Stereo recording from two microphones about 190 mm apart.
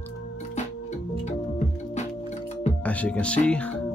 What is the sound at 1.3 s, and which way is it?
Music, 35° left (ahead or behind).